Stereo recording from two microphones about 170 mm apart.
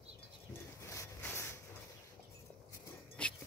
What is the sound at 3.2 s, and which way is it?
Music, 5° left (ahead or behind).